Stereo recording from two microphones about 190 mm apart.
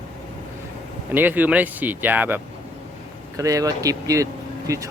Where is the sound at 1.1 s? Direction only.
10° right (ahead or behind).